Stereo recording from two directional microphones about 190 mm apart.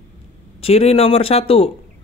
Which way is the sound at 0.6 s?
30° left (ahead or behind).